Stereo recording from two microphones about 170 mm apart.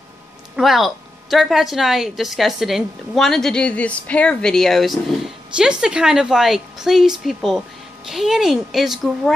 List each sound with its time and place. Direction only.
0.6 s a woman's voice: centre (ahead or behind)